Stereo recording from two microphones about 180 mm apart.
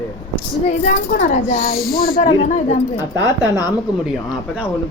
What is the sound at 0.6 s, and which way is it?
Speech, 40° left (ahead or behind).